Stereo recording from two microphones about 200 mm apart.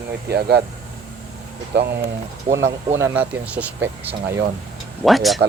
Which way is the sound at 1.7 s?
60° right (ahead or behind).